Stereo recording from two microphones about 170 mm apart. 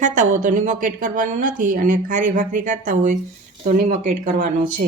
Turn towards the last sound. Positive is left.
turn(degrees=-50)  # may be behind; listen again after turning